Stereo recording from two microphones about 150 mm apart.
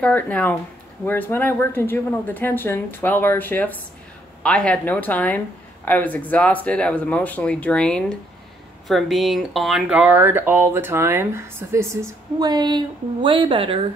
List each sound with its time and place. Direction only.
0.0 s speech: 10° left (ahead or behind); by 13.7 s 35° right (ahead or behind)